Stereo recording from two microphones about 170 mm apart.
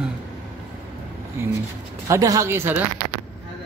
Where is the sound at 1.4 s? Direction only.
15° right (ahead or behind).